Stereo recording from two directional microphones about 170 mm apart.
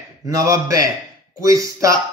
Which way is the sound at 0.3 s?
20° right (ahead or behind).